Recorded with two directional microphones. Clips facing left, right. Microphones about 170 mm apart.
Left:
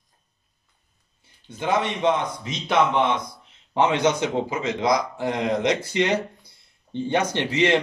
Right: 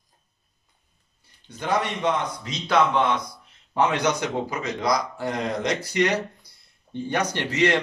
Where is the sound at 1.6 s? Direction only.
20° left (ahead or behind).